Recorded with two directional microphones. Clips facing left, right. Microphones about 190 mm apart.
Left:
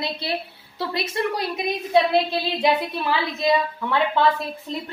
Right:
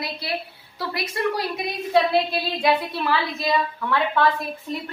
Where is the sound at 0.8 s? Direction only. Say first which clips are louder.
Left 2 dB; 25° left (ahead or behind).